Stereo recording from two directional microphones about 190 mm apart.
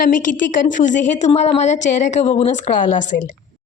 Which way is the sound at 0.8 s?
40° left (ahead or behind).